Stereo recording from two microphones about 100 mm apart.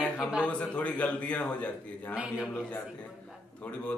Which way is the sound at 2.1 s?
10° right (ahead or behind).